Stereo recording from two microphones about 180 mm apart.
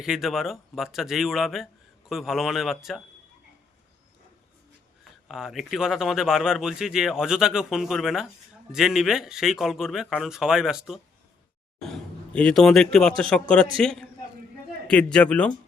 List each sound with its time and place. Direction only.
0.0 s speech: centre (ahead or behind)
5.3 s a man's voice: centre (ahead or behind)